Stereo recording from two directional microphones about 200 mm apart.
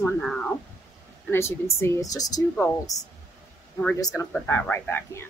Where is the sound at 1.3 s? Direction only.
15° left (ahead or behind).